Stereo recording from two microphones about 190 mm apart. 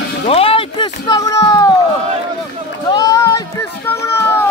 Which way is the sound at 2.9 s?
20° left (ahead or behind).